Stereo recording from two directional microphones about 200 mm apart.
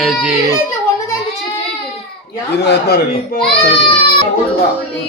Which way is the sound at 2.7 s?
55° left (ahead or behind).